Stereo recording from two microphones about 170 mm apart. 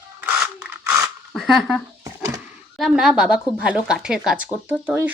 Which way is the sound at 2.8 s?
Centre (ahead or behind).